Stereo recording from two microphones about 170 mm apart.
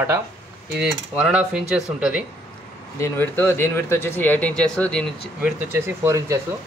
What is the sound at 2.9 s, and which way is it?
Speech, 15° left (ahead or behind).